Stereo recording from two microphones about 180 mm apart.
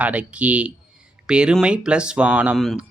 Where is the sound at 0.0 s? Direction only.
5° right (ahead or behind).